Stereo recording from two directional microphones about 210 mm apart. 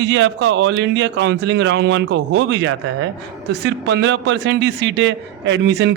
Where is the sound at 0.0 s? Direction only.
60° right (ahead or behind).